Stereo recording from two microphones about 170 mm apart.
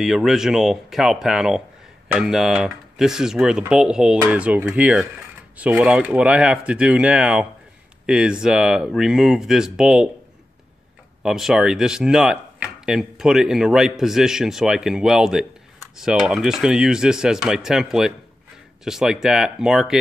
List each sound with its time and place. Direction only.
0.0 s speech: centre (ahead or behind)
11.2 s speech: centre (ahead or behind)